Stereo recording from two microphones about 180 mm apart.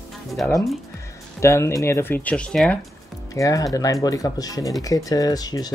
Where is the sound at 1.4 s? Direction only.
15° left (ahead or behind).